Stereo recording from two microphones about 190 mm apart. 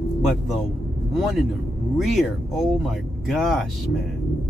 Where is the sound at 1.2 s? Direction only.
Centre (ahead or behind).